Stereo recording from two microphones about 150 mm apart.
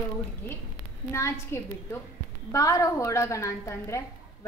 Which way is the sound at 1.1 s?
20° left (ahead or behind).